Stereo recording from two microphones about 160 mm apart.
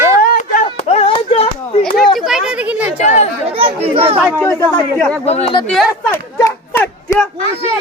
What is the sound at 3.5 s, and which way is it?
Speech, 35° right (ahead or behind).